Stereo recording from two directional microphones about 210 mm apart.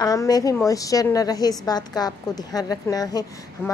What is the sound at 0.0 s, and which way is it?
A woman's voice, 15° left (ahead or behind).